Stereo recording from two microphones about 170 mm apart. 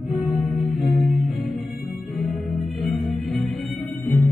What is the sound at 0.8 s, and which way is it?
Music, centre (ahead or behind).